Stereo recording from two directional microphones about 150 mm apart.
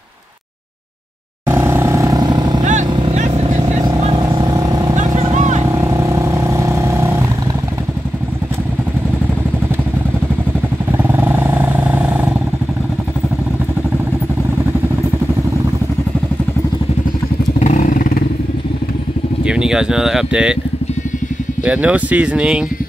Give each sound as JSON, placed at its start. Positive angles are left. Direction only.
{"t": 1.5, "sound": "vehicle", "side_deg": -15}
{"t": 2.6, "sound": "vehicle", "side_deg": -55}
{"t": 2.9, "sound": "vehicle", "side_deg": -35}
{"t": 4.9, "sound": "vehicle", "side_deg": -50}
{"t": 5.7, "sound": "vehicle", "side_deg": -20}
{"t": 17.6, "sound": "motorcycle", "side_deg": 55}
{"t": 19.4, "sound": "speech", "side_deg": -5}
{"t": 21.6, "sound": "speech", "side_deg": -10}